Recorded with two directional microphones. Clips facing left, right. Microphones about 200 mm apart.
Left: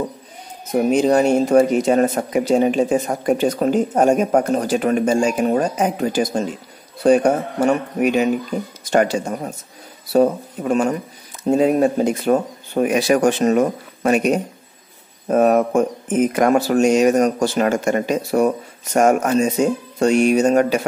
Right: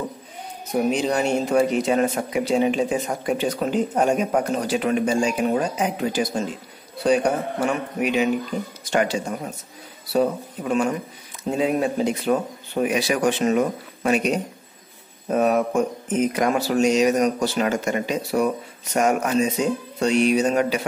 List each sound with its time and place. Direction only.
0.8 s speech: 45° left (ahead or behind)